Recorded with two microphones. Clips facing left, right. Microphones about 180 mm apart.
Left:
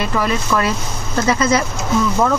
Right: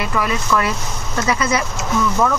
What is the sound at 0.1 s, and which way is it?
Speech, 30° left (ahead or behind).